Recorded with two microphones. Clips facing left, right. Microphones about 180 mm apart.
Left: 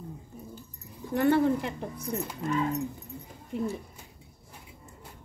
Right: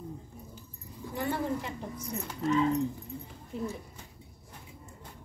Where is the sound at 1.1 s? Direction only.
70° left (ahead or behind).